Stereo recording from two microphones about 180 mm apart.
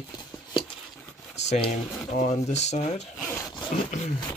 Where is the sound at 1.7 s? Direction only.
40° left (ahead or behind).